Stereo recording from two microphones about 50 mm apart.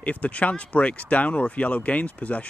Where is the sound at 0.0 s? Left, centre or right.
Left.